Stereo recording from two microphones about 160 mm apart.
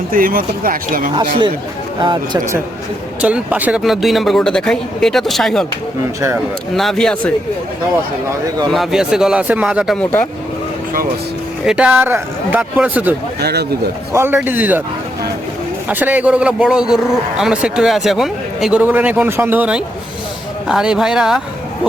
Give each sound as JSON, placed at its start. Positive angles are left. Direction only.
{"t": 0.1, "sound": "speech", "side_deg": -60}
{"t": 2.0, "sound": "speech", "side_deg": -30}
{"t": 3.2, "sound": "speech", "side_deg": -10}
{"t": 6.1, "sound": "speech", "side_deg": -15}
{"t": 6.7, "sound": "speech", "side_deg": 0}
{"t": 8.7, "sound": "speech", "side_deg": 0}
{"t": 10.0, "sound": "speech", "side_deg": 10}
{"t": 11.6, "sound": "speech", "side_deg": -5}
{"t": 13.4, "sound": "speech", "side_deg": -90}
{"t": 14.1, "sound": "speech", "side_deg": -15}
{"t": 15.9, "sound": "speech", "side_deg": -10}